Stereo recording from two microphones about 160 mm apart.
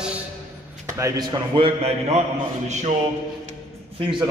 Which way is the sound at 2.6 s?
45° right (ahead or behind).